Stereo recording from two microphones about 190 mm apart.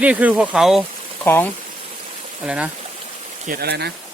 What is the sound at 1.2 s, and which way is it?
Speech, 10° left (ahead or behind).